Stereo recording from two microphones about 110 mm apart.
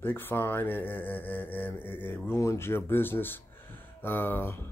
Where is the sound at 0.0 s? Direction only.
20° left (ahead or behind).